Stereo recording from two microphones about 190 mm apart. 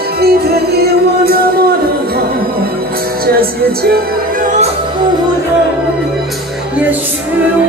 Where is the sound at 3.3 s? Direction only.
55° right (ahead or behind).